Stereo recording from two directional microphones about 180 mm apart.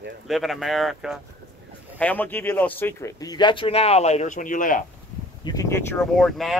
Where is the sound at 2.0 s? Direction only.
10° left (ahead or behind); by 4.8 s 45° left (ahead or behind).